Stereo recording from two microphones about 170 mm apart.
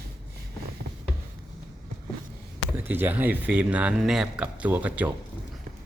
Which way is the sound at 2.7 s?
10° right (ahead or behind).